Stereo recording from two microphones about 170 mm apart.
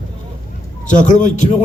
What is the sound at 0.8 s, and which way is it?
Speech, 45° left (ahead or behind).